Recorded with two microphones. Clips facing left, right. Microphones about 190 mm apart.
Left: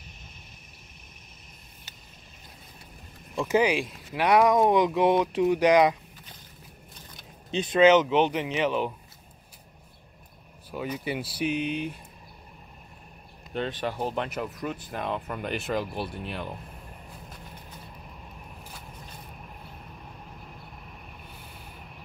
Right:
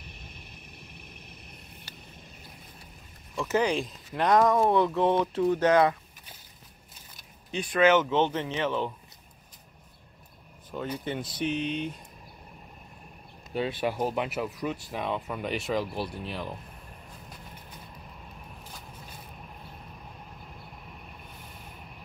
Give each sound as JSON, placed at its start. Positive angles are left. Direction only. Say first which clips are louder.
{"t": 3.3, "sound": "speech", "louder": "left 3 dB", "side_deg": 15}
{"t": 7.5, "sound": "speech", "louder": "left 4 dB", "side_deg": 20}
{"t": 10.7, "sound": "speech", "louder": "left 1 dB", "side_deg": 5}
{"t": 13.5, "sound": "speech", "louder": "right 1 dB", "side_deg": -10}